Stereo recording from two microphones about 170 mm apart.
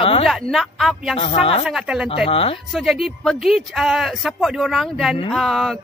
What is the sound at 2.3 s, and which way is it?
Speech, 35° left (ahead or behind).